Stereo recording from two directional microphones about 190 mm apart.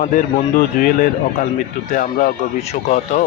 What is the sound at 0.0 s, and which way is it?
Speech, 45° left (ahead or behind).